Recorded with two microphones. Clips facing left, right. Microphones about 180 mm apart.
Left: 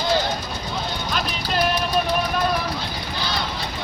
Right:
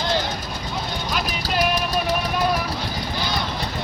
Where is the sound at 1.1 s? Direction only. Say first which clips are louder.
Right 1 dB; 10° right (ahead or behind).